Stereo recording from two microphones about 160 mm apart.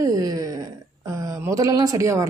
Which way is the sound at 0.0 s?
20° right (ahead or behind).